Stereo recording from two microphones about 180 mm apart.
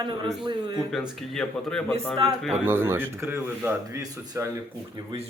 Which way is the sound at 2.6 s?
10° right (ahead or behind).